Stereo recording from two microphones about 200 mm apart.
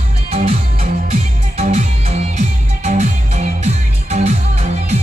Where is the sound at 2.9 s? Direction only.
35° right (ahead or behind).